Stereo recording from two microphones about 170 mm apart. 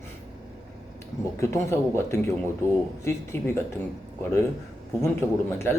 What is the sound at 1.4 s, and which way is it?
Speech, 15° left (ahead or behind).